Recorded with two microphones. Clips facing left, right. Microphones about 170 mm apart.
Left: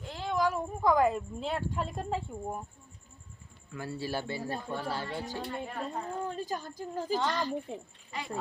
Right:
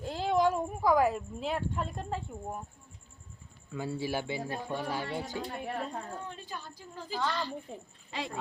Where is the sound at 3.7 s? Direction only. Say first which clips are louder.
Right 2 dB; 20° right (ahead or behind).